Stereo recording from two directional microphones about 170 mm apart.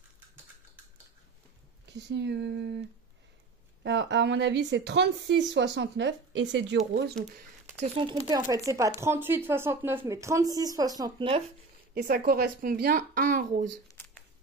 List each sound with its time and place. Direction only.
1.9 s speech: 90° right
3.8 s speech: 90° right
7.8 s speech: 30° right (ahead or behind)
8.3 s speech: 20° right (ahead or behind)
11.9 s speech: 65° right (ahead or behind)
13.8 s shuffling cards: 15° left (ahead or behind)